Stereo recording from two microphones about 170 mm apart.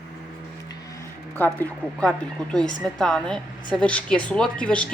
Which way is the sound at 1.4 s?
10° left (ahead or behind).